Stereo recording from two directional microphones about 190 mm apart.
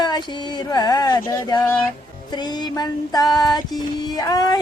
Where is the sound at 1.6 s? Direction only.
10° left (ahead or behind).